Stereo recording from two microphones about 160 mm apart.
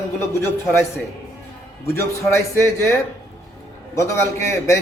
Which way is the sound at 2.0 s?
15° left (ahead or behind).